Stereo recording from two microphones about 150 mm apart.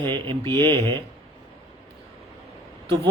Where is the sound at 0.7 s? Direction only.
35° right (ahead or behind).